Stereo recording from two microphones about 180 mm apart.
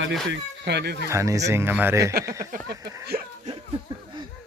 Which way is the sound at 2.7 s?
20° right (ahead or behind).